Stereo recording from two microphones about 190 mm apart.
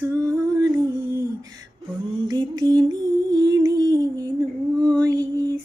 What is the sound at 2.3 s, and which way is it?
Music, 20° right (ahead or behind).